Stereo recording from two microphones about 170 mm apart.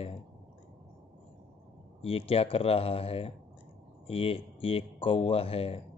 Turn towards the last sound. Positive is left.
turn(degrees=35)  # may be behind; listen again after turning